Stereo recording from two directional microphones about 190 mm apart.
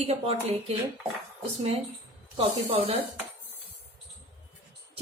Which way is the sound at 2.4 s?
30° right (ahead or behind).